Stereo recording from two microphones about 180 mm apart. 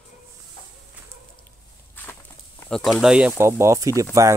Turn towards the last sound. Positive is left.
turn(degrees=-15)  # may be behind; listen again after turning